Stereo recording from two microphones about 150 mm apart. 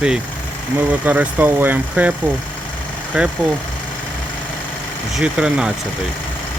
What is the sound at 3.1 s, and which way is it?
Speech, 10° right (ahead or behind).